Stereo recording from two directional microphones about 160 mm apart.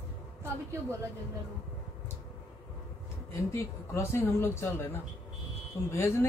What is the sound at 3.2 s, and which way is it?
Speech, 15° left (ahead or behind).